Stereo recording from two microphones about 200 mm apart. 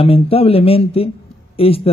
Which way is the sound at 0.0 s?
30° left (ahead or behind).